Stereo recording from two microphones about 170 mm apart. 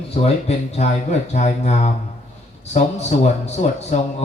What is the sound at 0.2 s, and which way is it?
Speech, 35° left (ahead or behind).